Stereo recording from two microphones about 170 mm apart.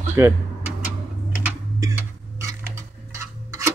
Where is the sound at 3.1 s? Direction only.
15° right (ahead or behind).